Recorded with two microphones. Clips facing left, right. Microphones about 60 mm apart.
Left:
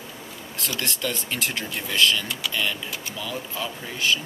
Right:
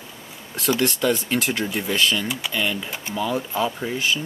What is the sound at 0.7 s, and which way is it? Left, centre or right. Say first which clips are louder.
Speech: right 11 dB; right.